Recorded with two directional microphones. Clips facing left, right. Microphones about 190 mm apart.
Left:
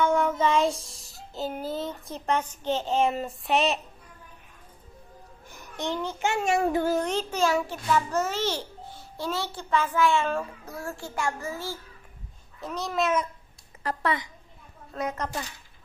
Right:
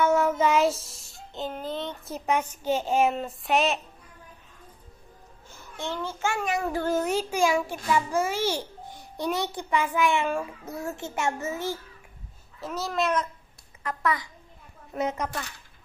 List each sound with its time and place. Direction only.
0.0 s child singing: 5° right (ahead or behind)
5.5 s a child's voice: 15° left (ahead or behind)
6.8 s a child's voice: centre (ahead or behind); by 11.8 s 20° right (ahead or behind)
12.5 s a child's voice: centre (ahead or behind)
13.8 s a child's voice: 30° left (ahead or behind)
14.9 s speech: 20° right (ahead or behind)